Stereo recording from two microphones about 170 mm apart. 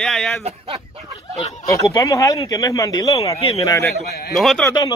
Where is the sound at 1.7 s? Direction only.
20° left (ahead or behind).